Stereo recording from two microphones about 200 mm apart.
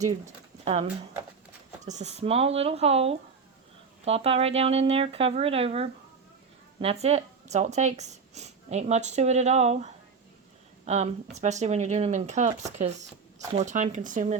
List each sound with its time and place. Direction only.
0.6 s speech: 35° right (ahead or behind)